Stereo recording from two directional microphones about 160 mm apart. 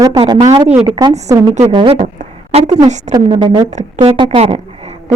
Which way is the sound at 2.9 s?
45° right (ahead or behind).